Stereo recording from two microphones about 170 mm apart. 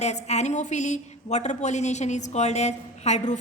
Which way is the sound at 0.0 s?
40° left (ahead or behind).